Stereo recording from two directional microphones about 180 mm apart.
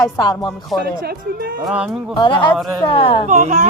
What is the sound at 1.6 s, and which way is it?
Speech, 5° right (ahead or behind).